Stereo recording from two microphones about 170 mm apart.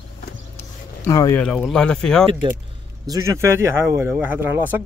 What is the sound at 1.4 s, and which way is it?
Speech, 5° left (ahead or behind).